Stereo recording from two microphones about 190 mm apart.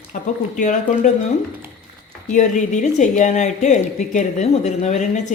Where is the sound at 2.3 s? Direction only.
40° left (ahead or behind).